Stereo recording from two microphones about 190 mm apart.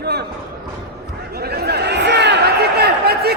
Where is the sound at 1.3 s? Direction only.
55° right (ahead or behind).